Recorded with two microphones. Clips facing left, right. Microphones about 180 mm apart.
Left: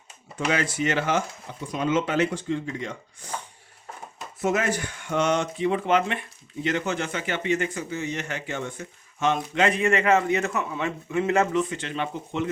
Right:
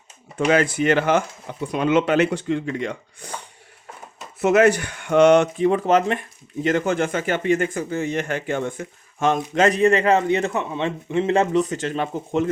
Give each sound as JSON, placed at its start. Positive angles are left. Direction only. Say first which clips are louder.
{"t": 0.3, "sound": "speech", "louder": "right 7 dB", "side_deg": -55}
{"t": 4.4, "sound": "speech", "louder": "right 9 dB", "side_deg": -70}
{"t": 5.6, "sound": "speech", "louder": "right 5 dB", "side_deg": -40}